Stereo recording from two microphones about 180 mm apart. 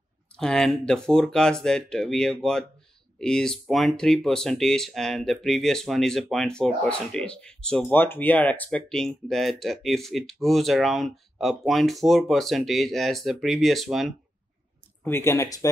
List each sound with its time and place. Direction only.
0.4 s speech: 5° left (ahead or behind)
15.0 s speech: 15° left (ahead or behind)